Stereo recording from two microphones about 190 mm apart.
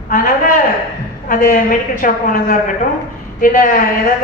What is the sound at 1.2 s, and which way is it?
A woman's voice, 45° left (ahead or behind).